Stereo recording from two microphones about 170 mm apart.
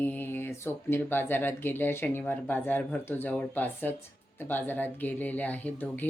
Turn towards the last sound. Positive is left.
turn(degrees=10)  # may be behind; listen again after turning